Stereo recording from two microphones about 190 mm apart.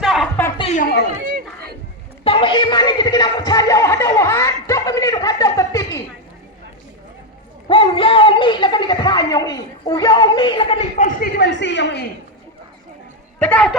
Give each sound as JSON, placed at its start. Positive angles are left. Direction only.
{"t": 0.0, "sound": "a sound", "side_deg": 0}
{"t": 0.6, "sound": "chatter", "side_deg": 35}
{"t": 2.2, "sound": "music", "side_deg": 25}
{"t": 7.7, "sound": "speech", "side_deg": 30}
{"t": 11.3, "sound": "speech", "side_deg": 70}
{"t": 13.4, "sound": "a woman's voice", "side_deg": 5}